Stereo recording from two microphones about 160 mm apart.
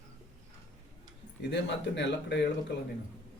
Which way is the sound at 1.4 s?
90° left.